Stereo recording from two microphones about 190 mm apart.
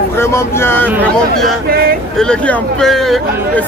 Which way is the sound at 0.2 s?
15° left (ahead or behind).